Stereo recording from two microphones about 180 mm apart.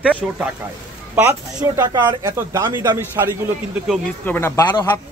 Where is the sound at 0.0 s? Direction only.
5° right (ahead or behind); by 3.0 s 20° right (ahead or behind).